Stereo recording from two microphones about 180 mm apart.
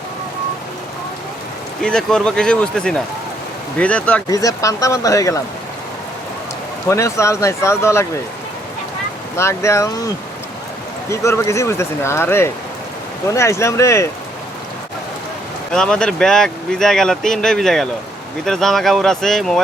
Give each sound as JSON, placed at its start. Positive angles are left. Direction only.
{"t": 1.8, "sound": "speech", "side_deg": 5}
{"t": 4.3, "sound": "speech", "side_deg": 20}
{"t": 6.8, "sound": "speech", "side_deg": 15}
{"t": 9.3, "sound": "speech", "side_deg": 15}
{"t": 11.1, "sound": "speech", "side_deg": 15}
{"t": 15.7, "sound": "speech", "side_deg": 5}